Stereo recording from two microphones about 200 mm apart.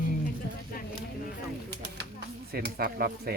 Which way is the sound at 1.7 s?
55° right (ahead or behind).